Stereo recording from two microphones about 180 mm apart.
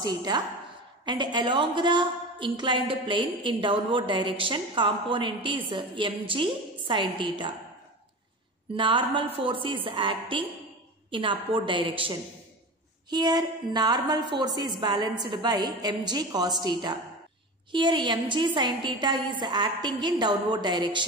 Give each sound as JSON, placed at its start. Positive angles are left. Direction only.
{"t": 0.0, "sound": "a woman's voice", "side_deg": -20}
{"t": 8.7, "sound": "a woman's voice", "side_deg": -25}